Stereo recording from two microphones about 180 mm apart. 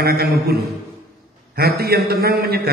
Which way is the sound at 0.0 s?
60° right (ahead or behind).